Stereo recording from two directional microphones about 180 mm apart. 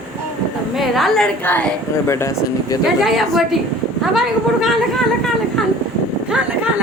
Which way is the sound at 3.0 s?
Centre (ahead or behind).